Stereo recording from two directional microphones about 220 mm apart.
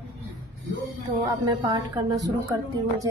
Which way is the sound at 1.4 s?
20° right (ahead or behind).